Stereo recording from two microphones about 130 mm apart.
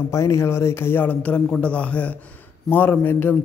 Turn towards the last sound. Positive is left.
turn(degrees=15)  # may be behind; listen again after turning